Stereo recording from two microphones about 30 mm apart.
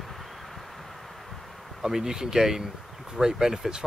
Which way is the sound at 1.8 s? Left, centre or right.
Centre.